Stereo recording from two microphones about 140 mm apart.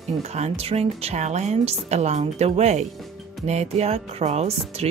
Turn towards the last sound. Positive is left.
turn(degrees=-45)  # may be behind; listen again after turning